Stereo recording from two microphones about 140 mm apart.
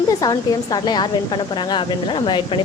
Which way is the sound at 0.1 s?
30° left (ahead or behind).